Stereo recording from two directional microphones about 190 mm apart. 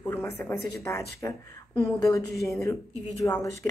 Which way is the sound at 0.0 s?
15° left (ahead or behind).